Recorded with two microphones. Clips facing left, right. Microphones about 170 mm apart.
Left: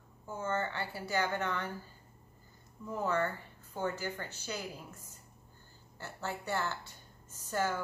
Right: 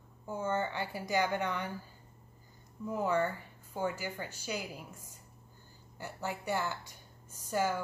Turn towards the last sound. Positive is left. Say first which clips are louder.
# right 2 dB
turn(degrees=-10)  # may be behind; listen again after turning